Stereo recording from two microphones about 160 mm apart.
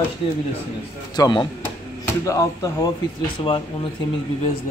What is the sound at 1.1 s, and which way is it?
Speech, 25° left (ahead or behind).